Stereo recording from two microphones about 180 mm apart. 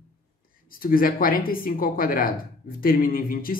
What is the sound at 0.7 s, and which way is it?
Speech, 55° left (ahead or behind).